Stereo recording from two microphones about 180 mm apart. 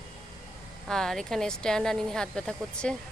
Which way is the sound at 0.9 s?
5° left (ahead or behind).